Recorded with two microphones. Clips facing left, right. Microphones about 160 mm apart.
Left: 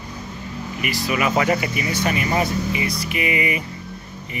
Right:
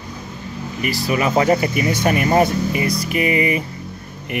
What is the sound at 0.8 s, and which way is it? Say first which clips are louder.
Speech: right 3 dB; 35° right (ahead or behind).